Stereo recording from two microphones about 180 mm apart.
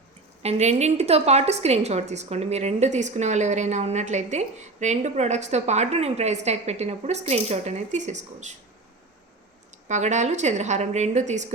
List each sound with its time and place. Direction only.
0.4 s a woman's voice: 40° right (ahead or behind)
9.9 s a woman's voice: 40° right (ahead or behind)